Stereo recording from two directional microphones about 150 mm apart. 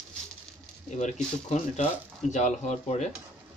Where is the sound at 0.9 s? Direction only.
50° left (ahead or behind).